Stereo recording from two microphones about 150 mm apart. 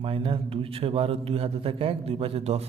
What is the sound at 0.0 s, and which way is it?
A man's voice, 40° right (ahead or behind).